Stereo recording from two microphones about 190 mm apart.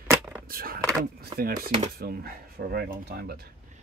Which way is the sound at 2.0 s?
50° right (ahead or behind).